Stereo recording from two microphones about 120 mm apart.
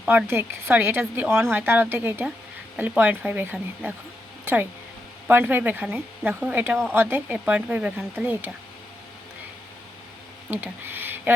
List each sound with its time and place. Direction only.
0.0 s speech: 15° right (ahead or behind)
5.3 s speech: 15° right (ahead or behind)
10.5 s a sound: 15° right (ahead or behind)